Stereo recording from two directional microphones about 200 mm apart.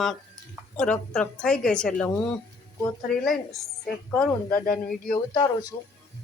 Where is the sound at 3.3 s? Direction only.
Centre (ahead or behind).